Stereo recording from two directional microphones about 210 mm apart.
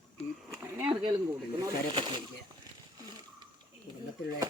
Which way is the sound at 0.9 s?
25° right (ahead or behind).